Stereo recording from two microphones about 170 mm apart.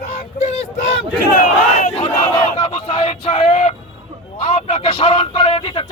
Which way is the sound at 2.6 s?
35° left (ahead or behind).